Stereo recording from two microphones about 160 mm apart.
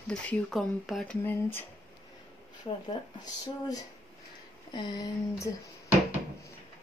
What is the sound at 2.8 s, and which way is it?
Speech, 25° left (ahead or behind).